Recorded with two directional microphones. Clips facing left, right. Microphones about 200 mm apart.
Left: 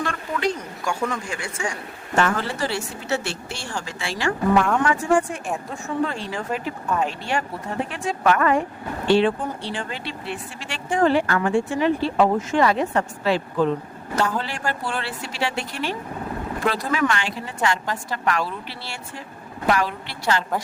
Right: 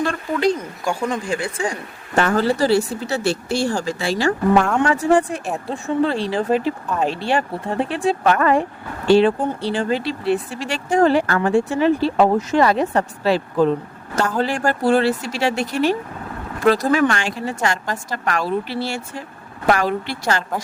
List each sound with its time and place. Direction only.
0.0 s speech: 35° right (ahead or behind)